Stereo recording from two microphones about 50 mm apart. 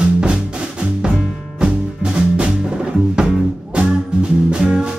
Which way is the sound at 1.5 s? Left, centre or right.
Centre.